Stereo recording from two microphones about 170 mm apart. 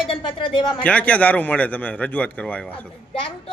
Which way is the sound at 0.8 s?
10° left (ahead or behind).